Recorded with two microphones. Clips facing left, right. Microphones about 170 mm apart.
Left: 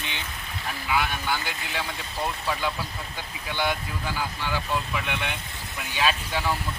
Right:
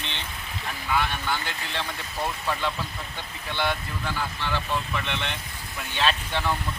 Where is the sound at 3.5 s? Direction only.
10° left (ahead or behind).